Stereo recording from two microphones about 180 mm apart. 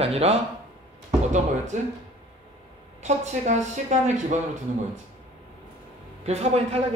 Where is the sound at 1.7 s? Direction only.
40° right (ahead or behind).